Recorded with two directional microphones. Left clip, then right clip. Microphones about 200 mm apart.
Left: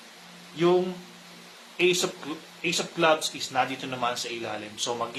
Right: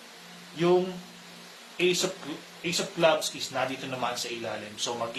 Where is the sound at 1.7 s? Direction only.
30° left (ahead or behind).